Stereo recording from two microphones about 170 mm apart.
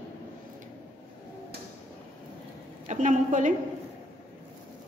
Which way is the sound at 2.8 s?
45° right (ahead or behind).